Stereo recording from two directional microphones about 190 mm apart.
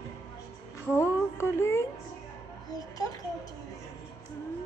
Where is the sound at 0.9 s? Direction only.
15° left (ahead or behind).